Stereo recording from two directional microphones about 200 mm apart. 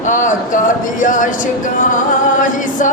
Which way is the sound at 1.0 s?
40° left (ahead or behind).